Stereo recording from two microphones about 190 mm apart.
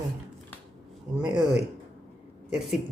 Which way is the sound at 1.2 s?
25° right (ahead or behind).